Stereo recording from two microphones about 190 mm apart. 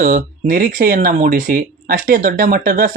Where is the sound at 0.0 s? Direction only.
45° right (ahead or behind).